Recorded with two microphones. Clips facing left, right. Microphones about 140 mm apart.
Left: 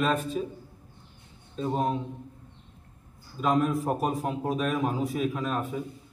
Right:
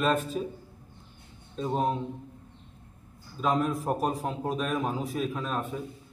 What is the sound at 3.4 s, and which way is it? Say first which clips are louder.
A man's voice: left 2 dB; centre (ahead or behind).